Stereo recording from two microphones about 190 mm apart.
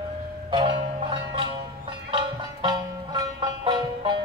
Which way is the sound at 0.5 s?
25° right (ahead or behind).